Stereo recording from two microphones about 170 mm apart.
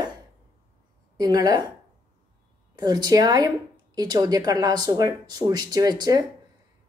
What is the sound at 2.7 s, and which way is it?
A woman's voice, 25° right (ahead or behind).